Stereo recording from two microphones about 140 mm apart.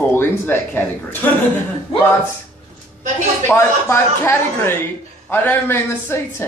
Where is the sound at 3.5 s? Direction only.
20° left (ahead or behind).